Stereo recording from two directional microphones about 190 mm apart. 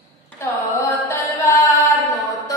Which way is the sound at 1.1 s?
15° left (ahead or behind).